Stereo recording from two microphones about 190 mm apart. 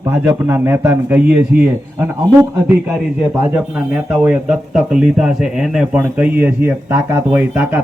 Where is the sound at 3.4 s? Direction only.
10° right (ahead or behind).